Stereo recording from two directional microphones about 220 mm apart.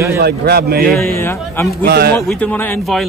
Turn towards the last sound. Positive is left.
turn(degrees=5)  # may be behind; listen again after turning